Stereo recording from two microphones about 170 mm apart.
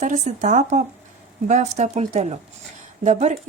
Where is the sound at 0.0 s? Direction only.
45° right (ahead or behind).